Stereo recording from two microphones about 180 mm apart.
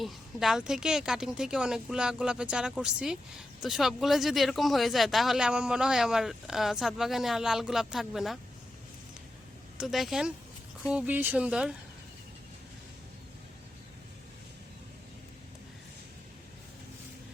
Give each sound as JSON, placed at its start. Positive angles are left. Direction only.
{"t": 0.0, "sound": "speech", "side_deg": 0}
{"t": 9.7, "sound": "speech", "side_deg": 0}